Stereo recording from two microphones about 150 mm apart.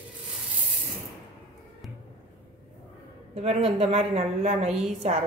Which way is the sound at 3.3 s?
45° right (ahead or behind).